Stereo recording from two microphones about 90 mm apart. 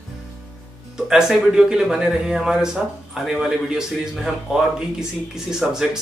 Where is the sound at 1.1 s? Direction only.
5° right (ahead or behind).